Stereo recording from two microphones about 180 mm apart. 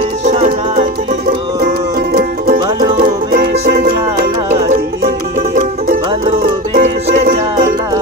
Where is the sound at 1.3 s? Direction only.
55° right (ahead or behind).